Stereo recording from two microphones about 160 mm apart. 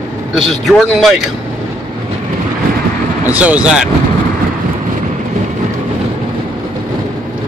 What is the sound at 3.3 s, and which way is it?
Speech, 10° right (ahead or behind).